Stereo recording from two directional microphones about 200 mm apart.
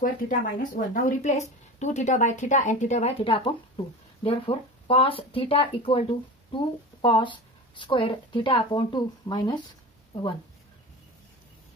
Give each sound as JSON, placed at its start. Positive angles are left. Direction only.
{"t": 0.0, "sound": "a woman's voice", "side_deg": 40}